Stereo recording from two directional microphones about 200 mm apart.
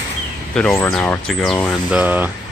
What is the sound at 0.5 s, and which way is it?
Speech, 5° left (ahead or behind).